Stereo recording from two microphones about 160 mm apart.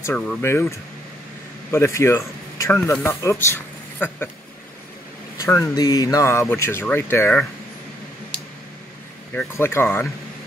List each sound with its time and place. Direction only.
0.0 s speech: 10° left (ahead or behind)
5.4 s speech: 20° left (ahead or behind)
9.3 s speech: 10° left (ahead or behind)